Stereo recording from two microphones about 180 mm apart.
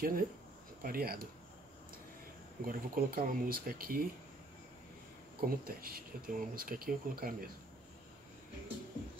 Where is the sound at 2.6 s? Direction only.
55° right (ahead or behind).